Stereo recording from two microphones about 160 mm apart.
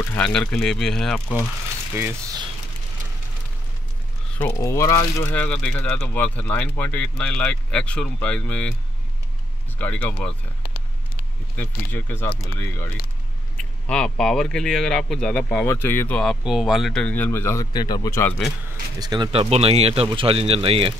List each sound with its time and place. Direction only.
0.0 s speech: 15° left (ahead or behind)
2.0 s speech: 15° right (ahead or behind)
4.4 s speech: 15° left (ahead or behind)
9.8 s speech: 10° left (ahead or behind)
11.5 s speech: 15° left (ahead or behind)
18.9 s speech: 25° right (ahead or behind)
19.3 s speech: 40° right (ahead or behind)